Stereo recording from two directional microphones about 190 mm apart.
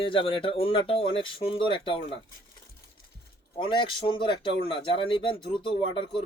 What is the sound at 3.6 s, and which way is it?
Speech, 25° left (ahead or behind).